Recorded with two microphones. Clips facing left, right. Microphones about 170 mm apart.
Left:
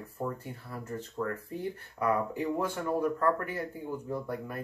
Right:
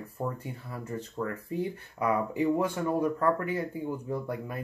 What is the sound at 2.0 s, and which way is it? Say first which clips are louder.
Speech: right 2 dB; 15° right (ahead or behind).